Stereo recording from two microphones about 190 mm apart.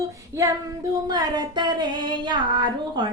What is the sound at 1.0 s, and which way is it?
Female singing, 20° right (ahead or behind).